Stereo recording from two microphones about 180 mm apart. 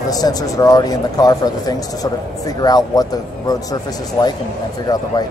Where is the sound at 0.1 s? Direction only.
20° left (ahead or behind).